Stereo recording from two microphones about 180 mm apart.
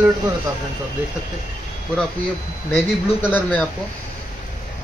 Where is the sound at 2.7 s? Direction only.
10° left (ahead or behind).